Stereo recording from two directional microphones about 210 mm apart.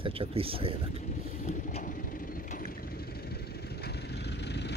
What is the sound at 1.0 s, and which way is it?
Vehicle, 35° left (ahead or behind).